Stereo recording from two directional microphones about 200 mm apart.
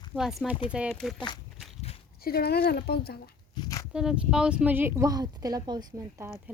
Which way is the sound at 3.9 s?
5° right (ahead or behind).